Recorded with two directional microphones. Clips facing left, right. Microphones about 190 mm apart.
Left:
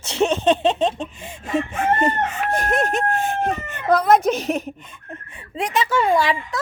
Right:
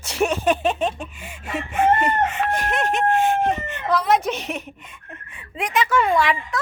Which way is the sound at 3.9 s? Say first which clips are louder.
Left 4 dB; 50° left (ahead or behind).